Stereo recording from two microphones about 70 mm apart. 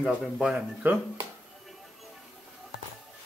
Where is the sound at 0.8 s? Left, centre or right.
Right.